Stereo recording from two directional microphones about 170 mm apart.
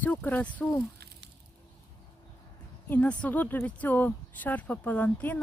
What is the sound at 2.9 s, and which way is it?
Speech, 10° left (ahead or behind).